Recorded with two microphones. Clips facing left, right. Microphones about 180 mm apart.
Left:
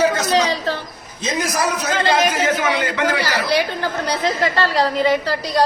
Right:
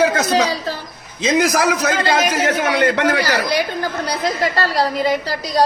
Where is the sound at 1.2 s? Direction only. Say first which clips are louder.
Right 5 dB; 85° right.